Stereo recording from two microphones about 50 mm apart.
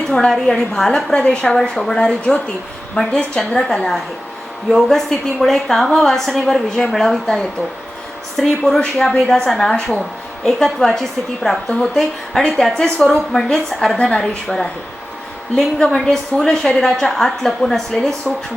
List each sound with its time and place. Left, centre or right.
0.1 s a woman's voice: centre
1.2 s a woman's voice: left; by 18.2 s centre